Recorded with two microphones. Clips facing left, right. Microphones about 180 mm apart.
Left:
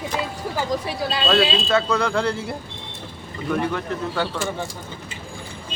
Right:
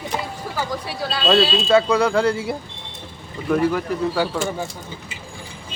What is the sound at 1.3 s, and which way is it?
Speech, 5° right (ahead or behind).